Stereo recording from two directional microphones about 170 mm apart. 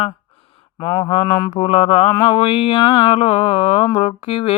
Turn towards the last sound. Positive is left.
turn(degrees=35)  # may be behind; listen again after turning